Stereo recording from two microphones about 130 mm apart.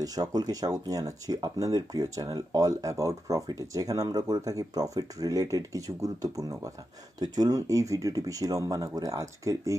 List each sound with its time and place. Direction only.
0.0 s speech: 30° right (ahead or behind)